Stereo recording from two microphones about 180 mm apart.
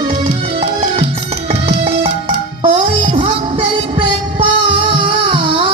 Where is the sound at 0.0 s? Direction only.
30° right (ahead or behind).